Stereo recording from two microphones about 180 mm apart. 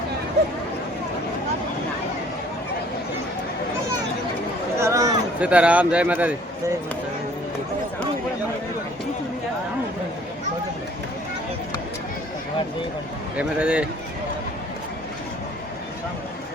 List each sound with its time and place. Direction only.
4.8 s a sound: 15° right (ahead or behind)
5.4 s a man's voice: 5° right (ahead or behind)
13.3 s a man's voice: 5° right (ahead or behind)